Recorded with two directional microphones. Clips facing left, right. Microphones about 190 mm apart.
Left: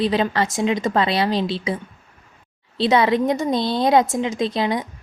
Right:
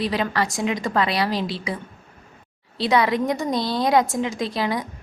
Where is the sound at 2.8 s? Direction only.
25° left (ahead or behind).